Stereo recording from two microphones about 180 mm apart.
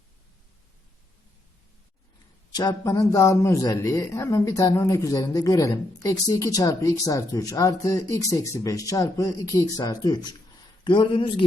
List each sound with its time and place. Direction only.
2.5 s a man's voice: 20° left (ahead or behind)